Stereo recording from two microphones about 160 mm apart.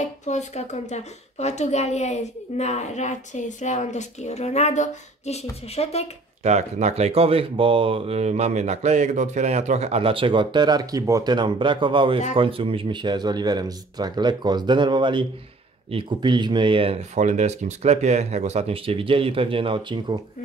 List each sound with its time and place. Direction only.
0.0 s speech: 45° left (ahead or behind)
6.4 s speech: 45° right (ahead or behind)